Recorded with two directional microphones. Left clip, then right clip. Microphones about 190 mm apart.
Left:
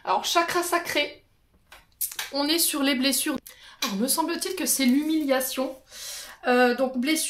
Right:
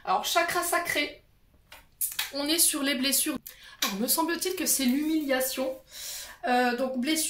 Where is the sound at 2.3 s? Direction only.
40° left (ahead or behind).